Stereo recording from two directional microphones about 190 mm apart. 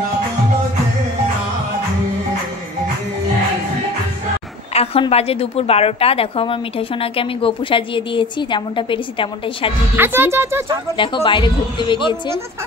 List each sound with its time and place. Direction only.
4.7 s a woman's voice: 30° left (ahead or behind)
9.9 s speech: 10° right (ahead or behind)
11.0 s a woman's voice: 25° left (ahead or behind)